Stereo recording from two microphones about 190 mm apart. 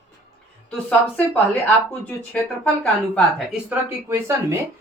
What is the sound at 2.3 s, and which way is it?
Speech, 10° left (ahead or behind).